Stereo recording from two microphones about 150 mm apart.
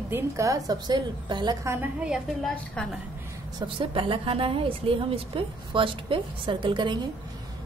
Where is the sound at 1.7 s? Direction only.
10° right (ahead or behind).